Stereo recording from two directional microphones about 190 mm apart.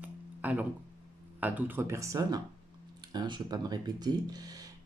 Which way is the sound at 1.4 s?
10° right (ahead or behind).